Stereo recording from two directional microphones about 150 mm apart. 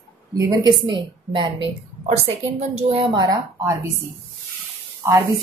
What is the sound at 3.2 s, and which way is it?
Speech, 25° right (ahead or behind).